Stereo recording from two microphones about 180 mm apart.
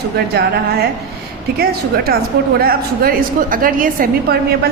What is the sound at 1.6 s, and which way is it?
A woman's voice, 60° right (ahead or behind).